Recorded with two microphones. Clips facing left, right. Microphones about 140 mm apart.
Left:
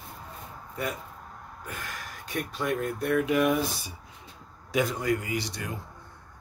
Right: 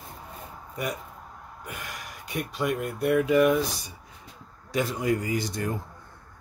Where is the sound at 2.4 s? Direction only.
10° right (ahead or behind).